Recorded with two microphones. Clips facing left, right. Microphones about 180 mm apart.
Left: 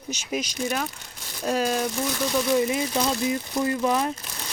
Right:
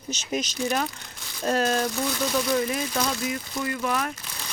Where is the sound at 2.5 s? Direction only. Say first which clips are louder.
Left 3 dB; 20° left (ahead or behind).